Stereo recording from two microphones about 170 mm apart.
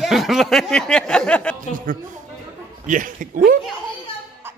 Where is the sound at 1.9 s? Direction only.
55° right (ahead or behind).